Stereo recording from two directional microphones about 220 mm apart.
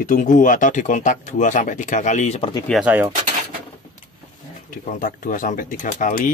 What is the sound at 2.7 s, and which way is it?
Speech, 5° right (ahead or behind).